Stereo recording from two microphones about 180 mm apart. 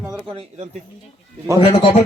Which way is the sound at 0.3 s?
35° right (ahead or behind).